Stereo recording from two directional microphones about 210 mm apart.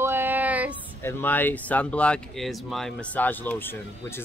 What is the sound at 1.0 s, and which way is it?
Speech, 10° left (ahead or behind).